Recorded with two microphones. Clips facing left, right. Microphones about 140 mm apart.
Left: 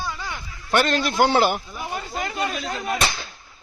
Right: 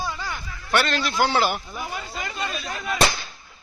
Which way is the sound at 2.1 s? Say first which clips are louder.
Left 7 dB; 50° left (ahead or behind).